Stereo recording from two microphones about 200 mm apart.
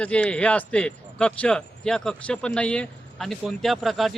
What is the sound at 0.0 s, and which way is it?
Speech, 5° left (ahead or behind).